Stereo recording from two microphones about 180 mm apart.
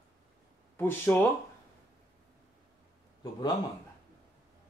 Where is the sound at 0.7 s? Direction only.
15° left (ahead or behind).